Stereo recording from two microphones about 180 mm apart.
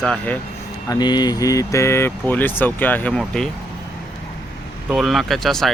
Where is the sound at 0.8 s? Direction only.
20° left (ahead or behind); by 3.5 s 5° left (ahead or behind).